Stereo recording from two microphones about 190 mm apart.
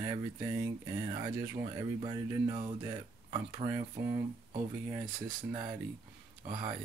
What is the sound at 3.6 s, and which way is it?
Speech, 20° right (ahead or behind).